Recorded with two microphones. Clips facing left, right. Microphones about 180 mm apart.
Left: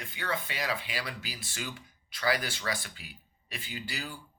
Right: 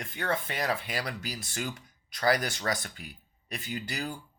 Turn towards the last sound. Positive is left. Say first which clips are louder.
# right 5 dB
turn(degrees=-45)  # may be behind; listen again after turning